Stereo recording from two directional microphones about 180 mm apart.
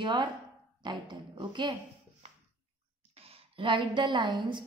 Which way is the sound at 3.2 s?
30° right (ahead or behind).